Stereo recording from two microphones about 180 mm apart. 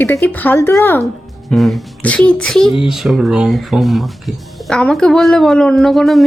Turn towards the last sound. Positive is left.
turn(degrees=0)  # may be behind; listen again after turning